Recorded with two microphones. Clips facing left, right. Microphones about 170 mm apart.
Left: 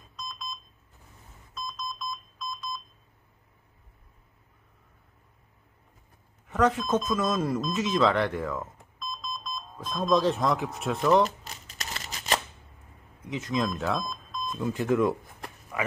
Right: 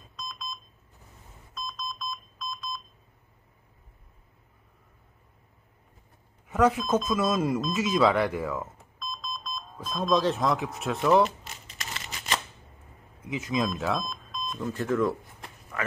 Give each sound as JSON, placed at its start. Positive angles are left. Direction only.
{"t": 0.1, "sound": "alarm clock", "side_deg": 5}
{"t": 1.5, "sound": "telephone dialing", "side_deg": 5}
{"t": 6.5, "sound": "speech", "side_deg": -10}
{"t": 9.0, "sound": "alarm clock", "side_deg": 5}
{"t": 9.8, "sound": "speech", "side_deg": 0}
{"t": 11.2, "sound": "shuffling cards", "side_deg": 40}
{"t": 13.3, "sound": "speech", "side_deg": -5}
{"t": 14.7, "sound": "speech", "side_deg": 15}